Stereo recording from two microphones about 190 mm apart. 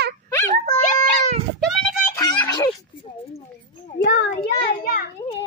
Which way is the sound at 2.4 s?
20° left (ahead or behind).